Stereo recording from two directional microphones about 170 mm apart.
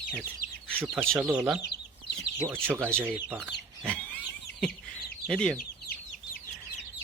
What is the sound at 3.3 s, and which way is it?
Chicken, 5° left (ahead or behind).